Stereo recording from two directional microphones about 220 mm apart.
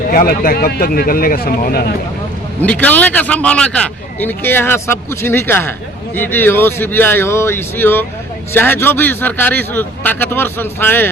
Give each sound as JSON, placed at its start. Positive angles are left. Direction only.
{"t": 0.1, "sound": "speech", "side_deg": 40}
{"t": 2.6, "sound": "a man's voice", "side_deg": 5}